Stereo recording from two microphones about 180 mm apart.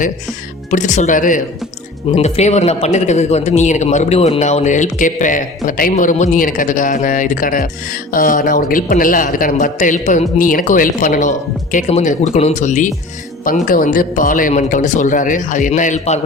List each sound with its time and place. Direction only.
0.7 s a man's voice: 45° left (ahead or behind)
2.0 s a man's voice: 35° left (ahead or behind)